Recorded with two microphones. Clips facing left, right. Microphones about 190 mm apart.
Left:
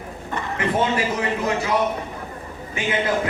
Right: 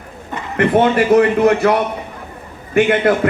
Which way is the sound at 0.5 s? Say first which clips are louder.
Right 9 dB; 60° right (ahead or behind).